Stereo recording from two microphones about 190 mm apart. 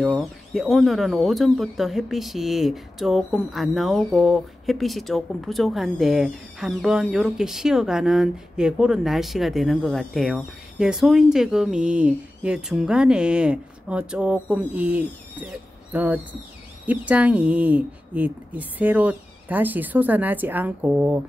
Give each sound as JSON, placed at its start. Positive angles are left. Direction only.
{"t": 0.0, "sound": "speech", "side_deg": 0}
{"t": 15.9, "sound": "owl", "side_deg": -10}
{"t": 16.8, "sound": "speech", "side_deg": -10}